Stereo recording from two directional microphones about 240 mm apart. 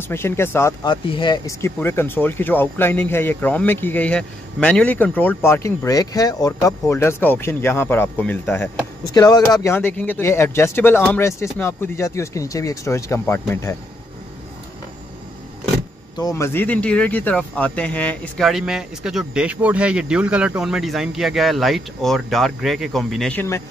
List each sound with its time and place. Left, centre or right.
0.1 s speech: centre
16.2 s speech: centre